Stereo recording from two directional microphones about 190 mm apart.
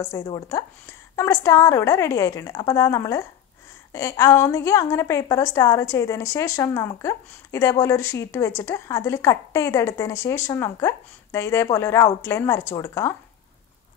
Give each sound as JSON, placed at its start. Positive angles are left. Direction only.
{"t": 0.1, "sound": "a woman's voice", "side_deg": 20}